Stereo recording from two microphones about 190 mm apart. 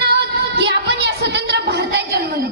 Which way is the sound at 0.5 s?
60° right (ahead or behind).